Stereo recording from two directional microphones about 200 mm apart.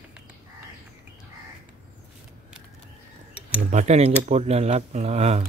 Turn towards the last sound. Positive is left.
turn(degrees=-30)  # may be behind; listen again after turning